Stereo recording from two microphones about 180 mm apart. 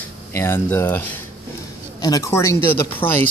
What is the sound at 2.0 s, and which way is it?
A man's voice, 20° left (ahead or behind).